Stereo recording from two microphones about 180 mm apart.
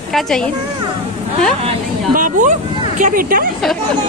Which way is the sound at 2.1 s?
50° right (ahead or behind).